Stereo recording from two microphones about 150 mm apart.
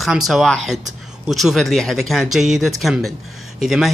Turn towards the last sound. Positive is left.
turn(degrees=0)  # may be behind; listen again after turning